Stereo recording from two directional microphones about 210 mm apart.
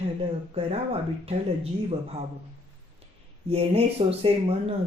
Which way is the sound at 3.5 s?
30° right (ahead or behind).